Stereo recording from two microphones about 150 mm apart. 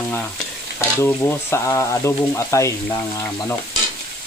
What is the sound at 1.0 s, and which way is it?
Stir, 20° left (ahead or behind).